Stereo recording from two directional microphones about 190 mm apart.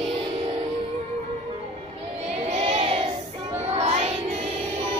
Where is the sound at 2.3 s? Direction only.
35° right (ahead or behind).